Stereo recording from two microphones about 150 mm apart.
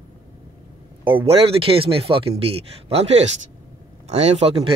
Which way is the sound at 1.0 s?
10° right (ahead or behind).